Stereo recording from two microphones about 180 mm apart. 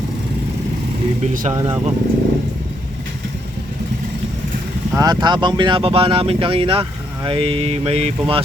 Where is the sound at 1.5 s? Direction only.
20° right (ahead or behind).